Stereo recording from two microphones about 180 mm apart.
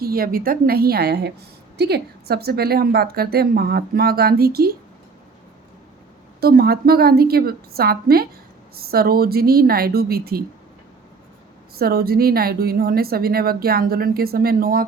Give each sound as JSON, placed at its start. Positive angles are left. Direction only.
{"t": 0.0, "sound": "a woman's voice", "side_deg": -55}
{"t": 6.4, "sound": "a woman's voice", "side_deg": -60}
{"t": 11.8, "sound": "a woman's voice", "side_deg": -60}